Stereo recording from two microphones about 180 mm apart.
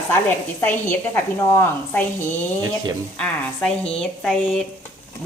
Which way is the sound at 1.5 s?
15° left (ahead or behind).